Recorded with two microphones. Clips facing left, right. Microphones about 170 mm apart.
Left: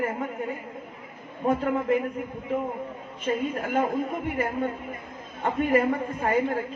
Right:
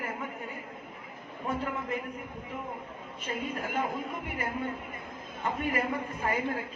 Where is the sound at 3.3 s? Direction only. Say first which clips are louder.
Left 8 dB; 50° left (ahead or behind).